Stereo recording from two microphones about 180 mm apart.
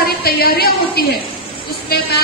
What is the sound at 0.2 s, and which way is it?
A woman's voice, 60° left (ahead or behind).